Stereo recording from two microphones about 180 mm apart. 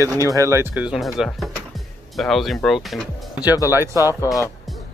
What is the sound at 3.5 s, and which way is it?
Speech, 20° left (ahead or behind).